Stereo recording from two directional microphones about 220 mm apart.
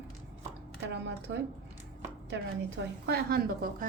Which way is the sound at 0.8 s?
50° right (ahead or behind).